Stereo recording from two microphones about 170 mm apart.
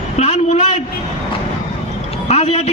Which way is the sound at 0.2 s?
40° left (ahead or behind).